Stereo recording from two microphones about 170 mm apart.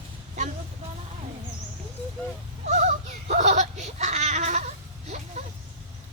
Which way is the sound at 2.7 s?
45° right (ahead or behind).